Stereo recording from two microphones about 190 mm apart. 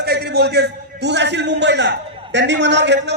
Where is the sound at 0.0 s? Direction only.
60° right (ahead or behind).